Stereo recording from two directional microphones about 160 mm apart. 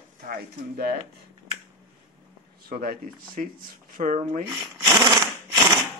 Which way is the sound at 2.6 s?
65° right (ahead or behind).